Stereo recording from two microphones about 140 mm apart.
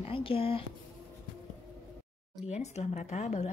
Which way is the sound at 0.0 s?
40° left (ahead or behind).